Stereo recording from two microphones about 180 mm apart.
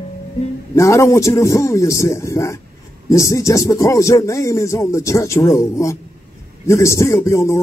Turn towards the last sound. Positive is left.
turn(degrees=15)  # may be behind; listen again after turning